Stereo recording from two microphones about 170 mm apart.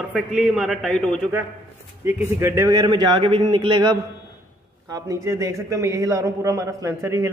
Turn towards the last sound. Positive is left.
turn(degrees=-20)  # may be behind; listen again after turning